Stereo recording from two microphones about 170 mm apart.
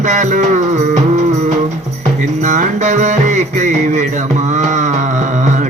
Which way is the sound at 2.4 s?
45° right (ahead or behind).